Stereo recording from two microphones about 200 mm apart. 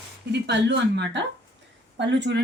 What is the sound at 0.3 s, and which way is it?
A woman's voice, 60° right (ahead or behind).